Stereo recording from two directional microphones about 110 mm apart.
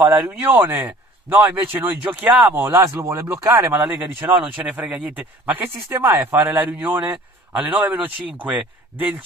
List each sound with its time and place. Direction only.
0.0 s speech: 30° right (ahead or behind)
0.3 s speech: 20° right (ahead or behind)
4.6 s speech: 15° right (ahead or behind)